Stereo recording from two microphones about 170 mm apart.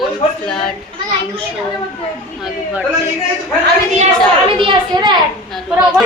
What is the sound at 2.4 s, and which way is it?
Speech, 10° right (ahead or behind).